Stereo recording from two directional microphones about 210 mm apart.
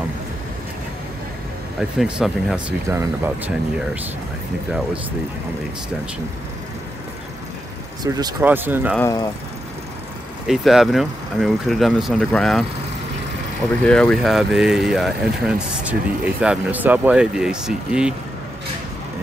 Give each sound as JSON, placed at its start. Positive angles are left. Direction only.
{"t": 1.8, "sound": "speech", "side_deg": -5}
{"t": 8.0, "sound": "speech", "side_deg": -20}
{"t": 8.9, "sound": "speech", "side_deg": 15}
{"t": 10.4, "sound": "speech", "side_deg": 0}
{"t": 13.7, "sound": "speech", "side_deg": 5}